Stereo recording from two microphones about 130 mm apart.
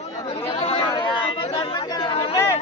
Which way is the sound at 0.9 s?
40° left (ahead or behind).